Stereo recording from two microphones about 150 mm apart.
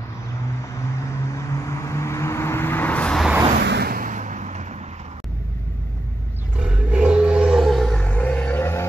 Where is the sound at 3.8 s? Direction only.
75° right (ahead or behind); by 4.6 s 50° right (ahead or behind).